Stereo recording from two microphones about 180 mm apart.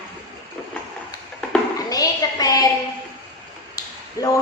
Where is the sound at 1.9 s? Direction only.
20° left (ahead or behind).